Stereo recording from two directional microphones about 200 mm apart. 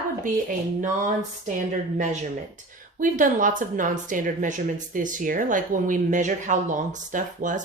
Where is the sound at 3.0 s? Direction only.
40° right (ahead or behind).